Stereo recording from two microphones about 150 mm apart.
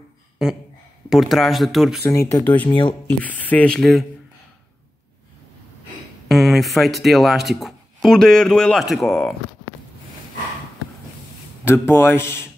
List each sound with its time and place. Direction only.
0.4 s speech: centre (ahead or behind)
2.0 s speech: 20° left (ahead or behind)
2.7 s speech: 30° left (ahead or behind)
3.1 s speech: 10° left (ahead or behind)
6.2 s speech: centre (ahead or behind)
11.6 s speech: 15° left (ahead or behind)